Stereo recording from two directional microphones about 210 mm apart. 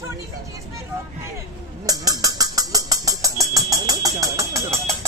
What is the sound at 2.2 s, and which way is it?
Music, 15° right (ahead or behind).